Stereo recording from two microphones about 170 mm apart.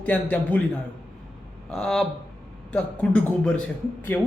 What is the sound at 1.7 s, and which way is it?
A man's voice, centre (ahead or behind).